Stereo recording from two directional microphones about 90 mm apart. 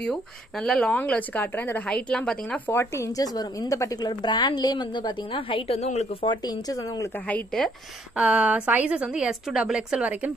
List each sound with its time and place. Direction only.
0.0 s speech: 5° left (ahead or behind)
0.9 s speech: 15° left (ahead or behind)
1.9 s speech: 10° left (ahead or behind)
2.7 s speech: 30° left (ahead or behind)
4.0 s a woman's voice: 55° left (ahead or behind); by 5.7 s 75° left (ahead or behind)
6.4 s speech: 45° left (ahead or behind)
7.2 s speech: 15° left (ahead or behind)
8.2 s a woman's voice: 15° right (ahead or behind)